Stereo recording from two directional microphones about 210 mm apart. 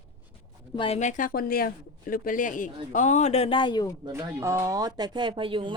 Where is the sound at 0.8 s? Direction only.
30° left (ahead or behind).